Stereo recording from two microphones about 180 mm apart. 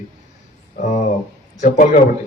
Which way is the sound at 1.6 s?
45° left (ahead or behind).